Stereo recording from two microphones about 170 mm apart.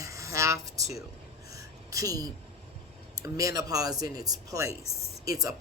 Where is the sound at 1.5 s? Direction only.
20° right (ahead or behind).